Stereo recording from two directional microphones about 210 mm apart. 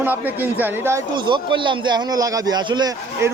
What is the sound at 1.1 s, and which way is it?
Speech, 20° right (ahead or behind).